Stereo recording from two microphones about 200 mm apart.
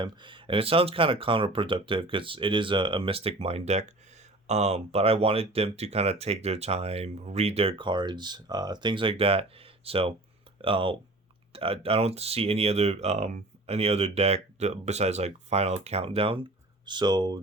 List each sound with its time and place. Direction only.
0.0 s speech: 25° right (ahead or behind)